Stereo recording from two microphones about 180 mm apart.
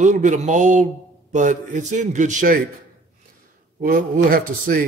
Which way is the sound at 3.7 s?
50° right (ahead or behind).